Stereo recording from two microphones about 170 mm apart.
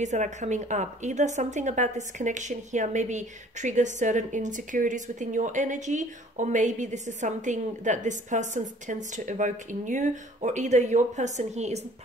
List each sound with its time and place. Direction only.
0.0 s a woman's voice: 45° right (ahead or behind)